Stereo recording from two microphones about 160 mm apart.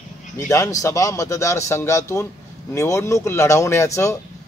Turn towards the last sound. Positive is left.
turn(degrees=20)  # may be behind; listen again after turning